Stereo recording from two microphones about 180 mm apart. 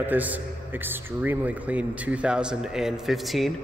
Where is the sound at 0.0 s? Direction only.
10° right (ahead or behind).